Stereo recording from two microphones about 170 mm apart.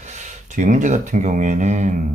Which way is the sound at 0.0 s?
45° right (ahead or behind).